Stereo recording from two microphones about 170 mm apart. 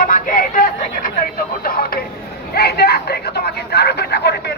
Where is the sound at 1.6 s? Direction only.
60° left (ahead or behind); by 4.5 s 75° left (ahead or behind).